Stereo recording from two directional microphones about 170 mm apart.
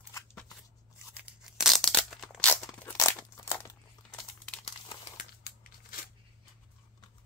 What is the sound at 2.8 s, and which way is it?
Crumpling, 20° left (ahead or behind).